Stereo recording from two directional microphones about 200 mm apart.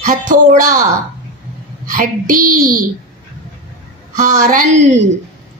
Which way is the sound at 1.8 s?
45° right (ahead or behind).